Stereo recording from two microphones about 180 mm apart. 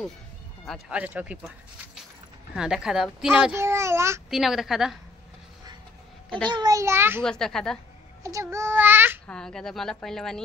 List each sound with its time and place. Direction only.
0.7 s a child's voice: 5° right (ahead or behind)
2.5 s speech: 5° right (ahead or behind)
3.5 s a child's voice: 15° right (ahead or behind)
4.3 s speech: centre (ahead or behind)
6.4 s a child's voice: 25° right (ahead or behind)
7.2 s speech: 5° left (ahead or behind)
8.2 s a child's voice: 15° right (ahead or behind)
9.3 s speech: 5° left (ahead or behind)